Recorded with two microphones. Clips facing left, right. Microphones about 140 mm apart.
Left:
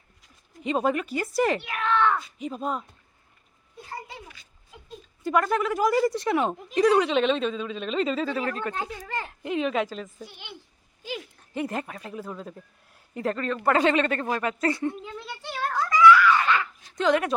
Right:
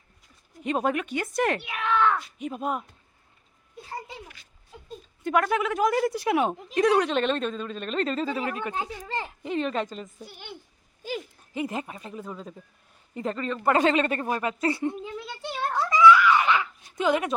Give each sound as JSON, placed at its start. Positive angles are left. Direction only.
{"t": 0.6, "sound": "speech", "side_deg": 0}
{"t": 1.6, "sound": "speech", "side_deg": -10}
{"t": 5.2, "sound": "speech", "side_deg": 0}
{"t": 8.8, "sound": "a child's voice", "side_deg": -25}
{"t": 9.2, "sound": "speech", "side_deg": 0}
{"t": 10.2, "sound": "speech", "side_deg": -45}
{"t": 11.5, "sound": "speech", "side_deg": -5}
{"t": 13.8, "sound": "a child's voice", "side_deg": -25}
{"t": 14.8, "sound": "a sound", "side_deg": -20}
{"t": 16.9, "sound": "speech", "side_deg": -5}